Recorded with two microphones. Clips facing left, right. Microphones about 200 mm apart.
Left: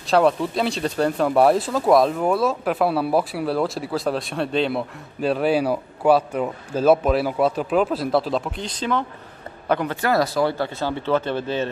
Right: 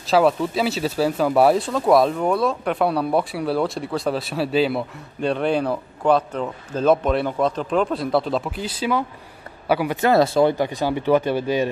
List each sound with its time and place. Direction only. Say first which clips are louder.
0.0 s a man's voice: even; centre (ahead or behind)
9.9 s speech: right 7 dB; 25° right (ahead or behind)
10.6 s speech: right 3 dB; 15° right (ahead or behind)